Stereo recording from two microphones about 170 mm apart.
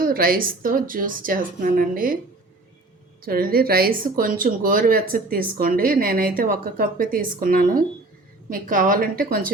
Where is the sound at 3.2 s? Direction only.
60° right (ahead or behind).